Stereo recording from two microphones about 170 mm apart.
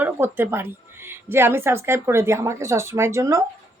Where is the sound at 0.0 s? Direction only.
15° right (ahead or behind).